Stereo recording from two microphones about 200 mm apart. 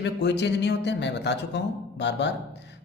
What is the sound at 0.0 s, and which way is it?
Speech, 60° left (ahead or behind).